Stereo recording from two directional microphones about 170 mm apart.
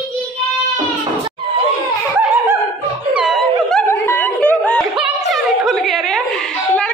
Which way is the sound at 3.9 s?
10° left (ahead or behind).